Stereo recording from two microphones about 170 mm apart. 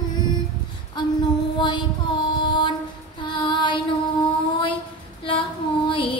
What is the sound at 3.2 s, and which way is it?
Music, 30° left (ahead or behind).